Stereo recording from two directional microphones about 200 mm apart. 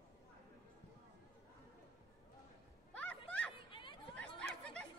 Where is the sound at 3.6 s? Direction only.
25° left (ahead or behind).